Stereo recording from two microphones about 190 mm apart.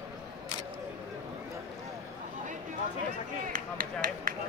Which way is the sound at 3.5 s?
45° right (ahead or behind).